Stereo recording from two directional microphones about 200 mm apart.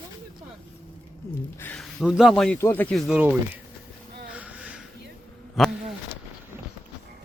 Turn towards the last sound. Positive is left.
turn(degrees=0)  # may be behind; listen again after turning